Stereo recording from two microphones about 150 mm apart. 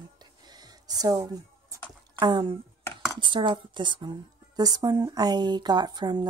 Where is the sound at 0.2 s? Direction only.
25° right (ahead or behind).